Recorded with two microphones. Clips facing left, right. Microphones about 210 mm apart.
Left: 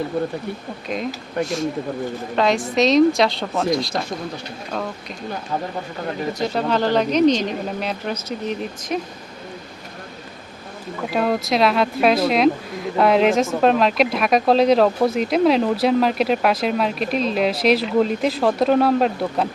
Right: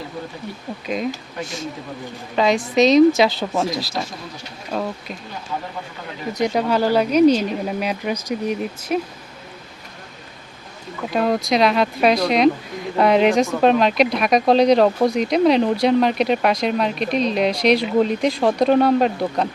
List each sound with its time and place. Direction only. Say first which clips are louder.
0.1 s speech: left 9 dB; 60° left (ahead or behind)
0.9 s speech: right 2 dB; centre (ahead or behind)
1.4 s speech: left 7 dB; 55° left (ahead or behind)
2.3 s speech: right 2 dB; centre (ahead or behind)
6.3 s speech: right 4 dB; 15° right (ahead or behind)
11.1 s speech: right 1 dB; centre (ahead or behind)